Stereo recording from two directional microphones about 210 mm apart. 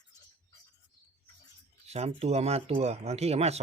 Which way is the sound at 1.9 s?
30° right (ahead or behind).